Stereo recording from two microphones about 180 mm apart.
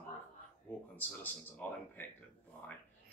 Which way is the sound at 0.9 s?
10° left (ahead or behind).